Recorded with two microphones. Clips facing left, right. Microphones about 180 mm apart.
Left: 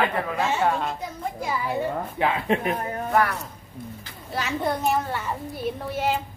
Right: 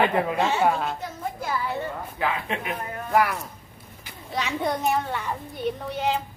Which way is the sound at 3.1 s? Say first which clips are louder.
Right 1 dB; 10° right (ahead or behind).